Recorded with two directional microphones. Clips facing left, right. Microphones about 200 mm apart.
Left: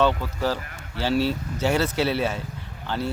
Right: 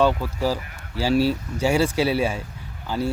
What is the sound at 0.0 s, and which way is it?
Speech, 10° right (ahead or behind).